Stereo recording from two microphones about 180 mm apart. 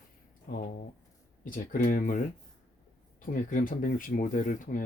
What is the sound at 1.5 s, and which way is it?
Speech, 50° left (ahead or behind).